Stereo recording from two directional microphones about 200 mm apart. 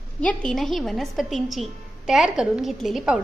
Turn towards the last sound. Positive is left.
turn(degrees=-5)  # may be behind; listen again after turning